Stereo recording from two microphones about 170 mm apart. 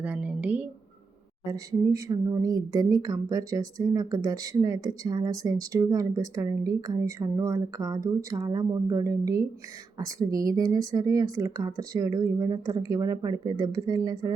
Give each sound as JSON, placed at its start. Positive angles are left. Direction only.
{"t": 0.0, "sound": "a woman's voice", "side_deg": -10}
{"t": 1.5, "sound": "speech", "side_deg": -20}